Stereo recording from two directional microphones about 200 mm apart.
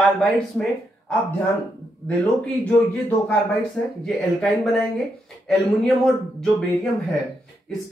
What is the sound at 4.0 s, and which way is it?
Speech, centre (ahead or behind).